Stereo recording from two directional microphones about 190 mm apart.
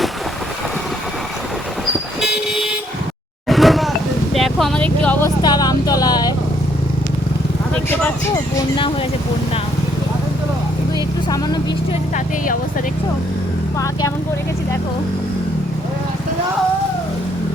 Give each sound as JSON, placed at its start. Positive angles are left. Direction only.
{"t": 2.2, "sound": "vehicle", "side_deg": 0}
{"t": 4.4, "sound": "speech", "side_deg": 0}
{"t": 5.4, "sound": "vehicle", "side_deg": 20}
{"t": 8.3, "sound": "speech", "side_deg": 25}